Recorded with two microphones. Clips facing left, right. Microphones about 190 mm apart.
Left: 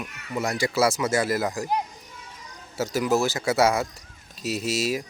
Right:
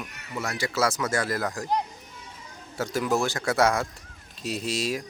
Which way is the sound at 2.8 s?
5° left (ahead or behind).